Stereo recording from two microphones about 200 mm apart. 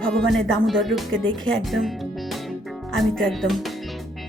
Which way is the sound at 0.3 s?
80° right.